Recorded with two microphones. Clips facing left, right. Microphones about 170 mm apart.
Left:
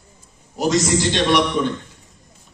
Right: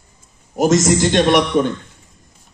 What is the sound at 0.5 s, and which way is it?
Speech, 50° right (ahead or behind).